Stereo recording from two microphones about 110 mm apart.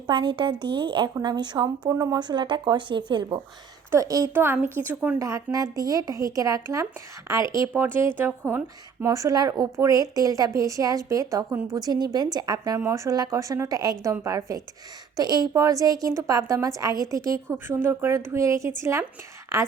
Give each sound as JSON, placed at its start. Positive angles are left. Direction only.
{"t": 0.1, "sound": "a woman's voice", "side_deg": -50}
{"t": 3.9, "sound": "a woman's voice", "side_deg": -30}
{"t": 4.4, "sound": "speech", "side_deg": -20}
{"t": 5.2, "sound": "a woman's voice", "side_deg": -30}
{"t": 9.0, "sound": "a woman's voice", "side_deg": -35}
{"t": 11.8, "sound": "a woman's voice", "side_deg": -40}